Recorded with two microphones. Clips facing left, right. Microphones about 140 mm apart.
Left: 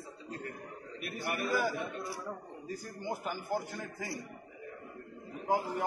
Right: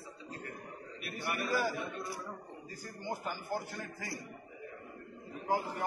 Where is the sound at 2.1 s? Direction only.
5° left (ahead or behind).